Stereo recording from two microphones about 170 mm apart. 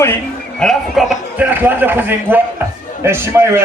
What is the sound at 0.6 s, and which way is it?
A man's voice, centre (ahead or behind).